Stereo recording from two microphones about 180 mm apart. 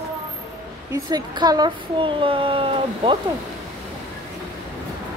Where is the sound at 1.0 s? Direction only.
20° right (ahead or behind).